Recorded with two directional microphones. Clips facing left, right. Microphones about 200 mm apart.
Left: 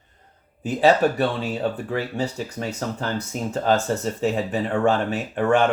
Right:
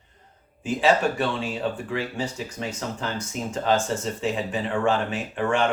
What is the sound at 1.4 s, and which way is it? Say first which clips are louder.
Speech: left 3 dB; 40° left (ahead or behind).